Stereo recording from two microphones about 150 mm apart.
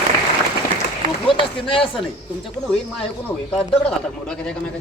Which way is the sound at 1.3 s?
35° left (ahead or behind).